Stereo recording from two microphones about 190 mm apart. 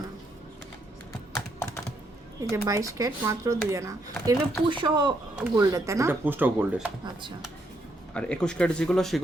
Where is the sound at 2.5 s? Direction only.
15° right (ahead or behind).